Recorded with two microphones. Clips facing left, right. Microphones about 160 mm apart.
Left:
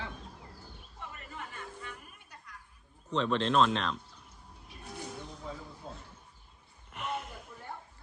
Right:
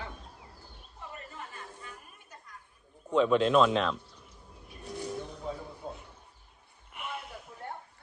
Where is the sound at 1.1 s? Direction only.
40° right (ahead or behind).